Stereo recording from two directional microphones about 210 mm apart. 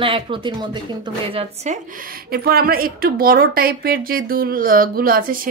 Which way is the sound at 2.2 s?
45° right (ahead or behind).